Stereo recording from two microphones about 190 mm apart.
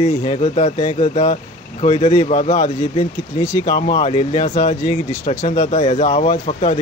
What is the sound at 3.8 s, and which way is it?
Speech, 30° left (ahead or behind).